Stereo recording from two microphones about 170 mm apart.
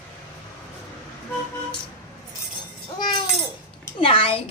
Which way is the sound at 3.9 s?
30° left (ahead or behind).